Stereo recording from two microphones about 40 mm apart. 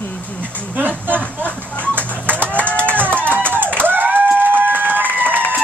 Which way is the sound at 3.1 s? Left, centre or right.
Right.